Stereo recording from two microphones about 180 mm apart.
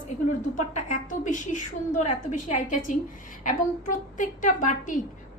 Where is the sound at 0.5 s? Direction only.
45° left (ahead or behind).